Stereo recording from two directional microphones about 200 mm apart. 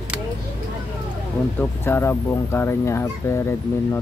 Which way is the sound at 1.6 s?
10° left (ahead or behind).